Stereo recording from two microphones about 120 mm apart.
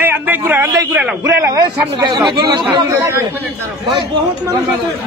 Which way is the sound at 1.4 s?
30° right (ahead or behind).